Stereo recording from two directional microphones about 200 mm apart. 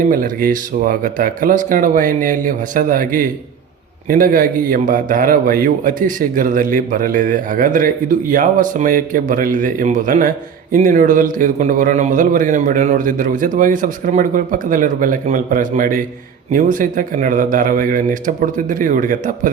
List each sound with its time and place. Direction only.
0.1 s a man's voice: 45° right (ahead or behind)